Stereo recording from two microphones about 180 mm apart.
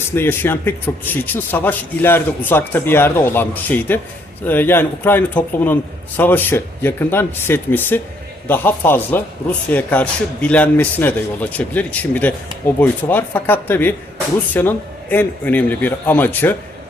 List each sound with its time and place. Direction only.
0.1 s speech: 10° left (ahead or behind)